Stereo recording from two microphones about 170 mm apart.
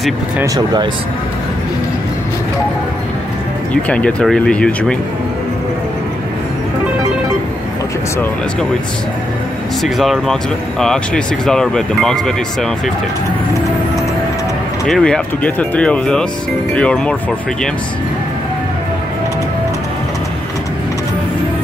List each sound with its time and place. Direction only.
3.7 s speech: 5° left (ahead or behind)
9.8 s speech: centre (ahead or behind)
14.9 s speech: 5° left (ahead or behind)